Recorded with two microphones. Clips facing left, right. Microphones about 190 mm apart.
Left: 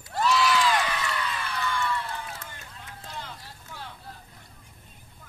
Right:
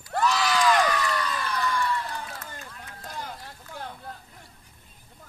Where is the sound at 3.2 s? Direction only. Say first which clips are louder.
Right 4 dB; 50° right (ahead or behind).